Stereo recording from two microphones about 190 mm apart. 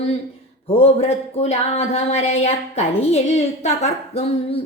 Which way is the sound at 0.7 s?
35° left (ahead or behind).